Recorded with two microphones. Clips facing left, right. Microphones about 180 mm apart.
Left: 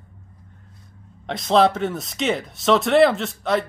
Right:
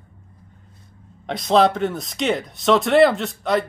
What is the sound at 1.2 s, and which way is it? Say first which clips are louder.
Speech: right 1 dB; centre (ahead or behind).